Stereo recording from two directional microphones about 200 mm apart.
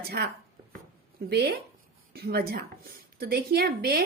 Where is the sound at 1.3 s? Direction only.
55° right (ahead or behind).